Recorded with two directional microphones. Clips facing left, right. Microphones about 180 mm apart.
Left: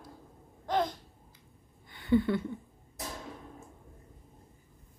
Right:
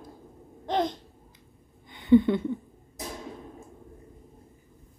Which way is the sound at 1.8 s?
20° right (ahead or behind).